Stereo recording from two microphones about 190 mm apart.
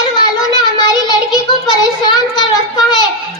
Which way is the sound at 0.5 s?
20° left (ahead or behind).